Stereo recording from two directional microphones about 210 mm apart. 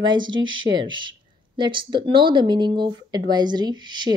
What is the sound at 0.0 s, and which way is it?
Speech, 20° right (ahead or behind).